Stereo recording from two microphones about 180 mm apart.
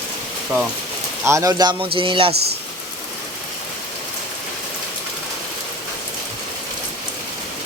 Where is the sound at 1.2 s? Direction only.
15° right (ahead or behind).